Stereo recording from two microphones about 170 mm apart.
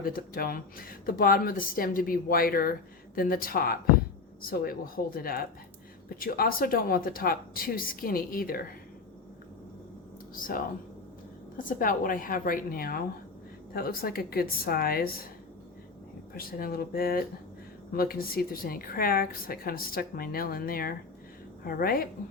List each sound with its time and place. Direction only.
0.0 s speech: 60° left (ahead or behind)
10.3 s speech: 55° left (ahead or behind)
16.3 s speech: 60° left (ahead or behind)